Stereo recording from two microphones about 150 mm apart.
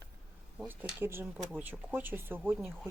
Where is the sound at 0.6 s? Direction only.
10° right (ahead or behind).